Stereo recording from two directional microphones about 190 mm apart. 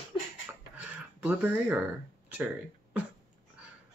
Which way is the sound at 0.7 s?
10° right (ahead or behind).